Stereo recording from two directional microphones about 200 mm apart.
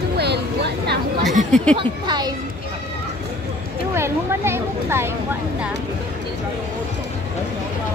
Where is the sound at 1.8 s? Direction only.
20° right (ahead or behind).